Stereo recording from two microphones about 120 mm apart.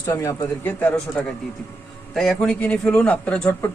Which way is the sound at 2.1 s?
5° left (ahead or behind).